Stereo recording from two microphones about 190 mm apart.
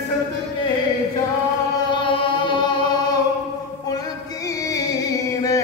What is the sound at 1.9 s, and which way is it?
Music, 25° left (ahead or behind).